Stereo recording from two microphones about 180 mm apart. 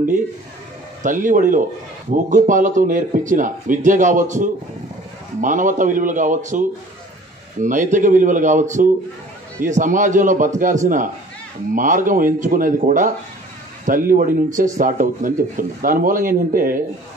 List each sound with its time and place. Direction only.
1.0 s speech: 45° right (ahead or behind)
7.6 s speech: 45° right (ahead or behind)